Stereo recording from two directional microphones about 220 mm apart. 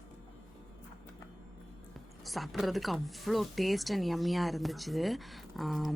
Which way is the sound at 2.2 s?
Centre (ahead or behind).